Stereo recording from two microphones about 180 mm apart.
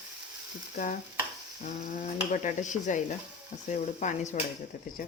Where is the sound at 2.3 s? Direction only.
40° left (ahead or behind).